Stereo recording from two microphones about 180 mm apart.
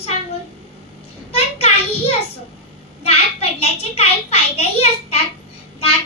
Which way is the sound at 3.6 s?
35° left (ahead or behind).